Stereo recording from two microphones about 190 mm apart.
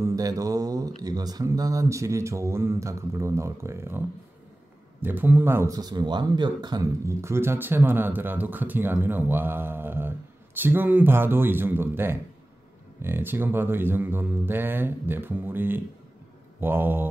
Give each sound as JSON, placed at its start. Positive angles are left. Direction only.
{"t": 0.0, "sound": "speech", "side_deg": -20}
{"t": 5.0, "sound": "speech", "side_deg": -10}